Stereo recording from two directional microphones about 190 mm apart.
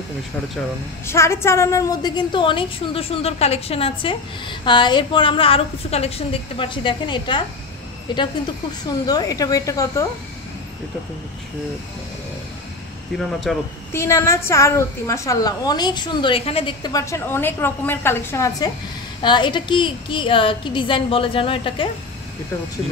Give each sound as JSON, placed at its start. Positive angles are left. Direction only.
{"t": 1.0, "sound": "a woman's voice", "side_deg": 15}
{"t": 13.2, "sound": "speech", "side_deg": 0}
{"t": 13.9, "sound": "a woman's voice", "side_deg": 15}